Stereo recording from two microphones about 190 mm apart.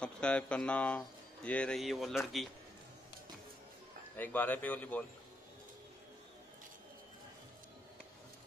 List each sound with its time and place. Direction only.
0.0 s speech: 5° left (ahead or behind)
4.2 s speech: 10° left (ahead or behind)